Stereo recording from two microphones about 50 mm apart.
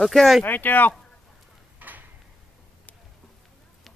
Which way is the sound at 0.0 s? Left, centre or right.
Centre.